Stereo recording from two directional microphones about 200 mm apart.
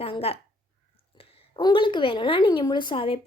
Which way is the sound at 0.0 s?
30° left (ahead or behind).